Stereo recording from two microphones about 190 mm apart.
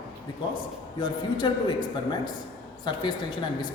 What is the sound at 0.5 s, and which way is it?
A man's voice, 25° left (ahead or behind).